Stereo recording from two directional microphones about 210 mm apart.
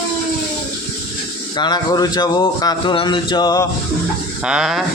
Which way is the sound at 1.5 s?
20° left (ahead or behind).